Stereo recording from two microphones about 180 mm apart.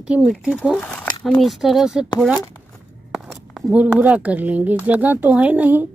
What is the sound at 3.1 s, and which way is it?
Speech, 5° right (ahead or behind).